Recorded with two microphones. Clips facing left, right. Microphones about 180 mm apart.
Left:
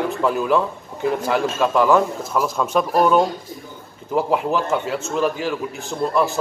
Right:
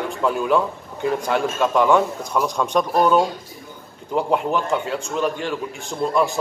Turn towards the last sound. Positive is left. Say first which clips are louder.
# even
turn(degrees=0)  # may be behind; listen again after turning